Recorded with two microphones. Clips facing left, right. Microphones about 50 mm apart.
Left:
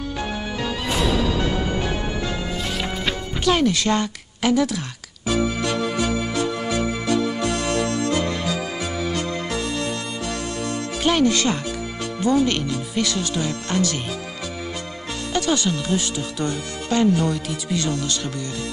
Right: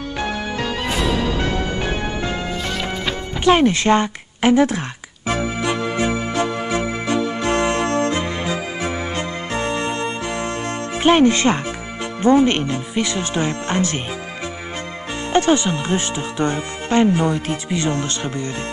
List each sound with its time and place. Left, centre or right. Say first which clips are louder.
3.4 s speech: right 5 dB; right
5.6 s music: right 2 dB; right
12.2 s speech: right 5 dB; right
15.3 s speech: right 6 dB; right